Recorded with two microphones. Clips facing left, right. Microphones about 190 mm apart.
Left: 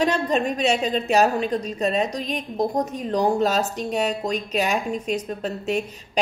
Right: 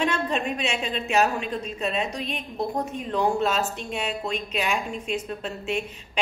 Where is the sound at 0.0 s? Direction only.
40° left (ahead or behind).